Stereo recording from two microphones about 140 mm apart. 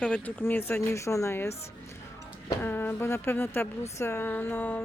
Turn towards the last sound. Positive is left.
turn(degrees=15)  # may be behind; listen again after turning